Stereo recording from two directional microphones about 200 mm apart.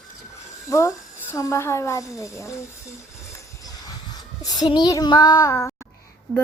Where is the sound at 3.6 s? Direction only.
15° left (ahead or behind).